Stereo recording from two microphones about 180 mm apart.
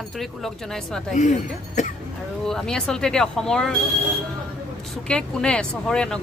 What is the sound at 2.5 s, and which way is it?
Speech, 5° left (ahead or behind).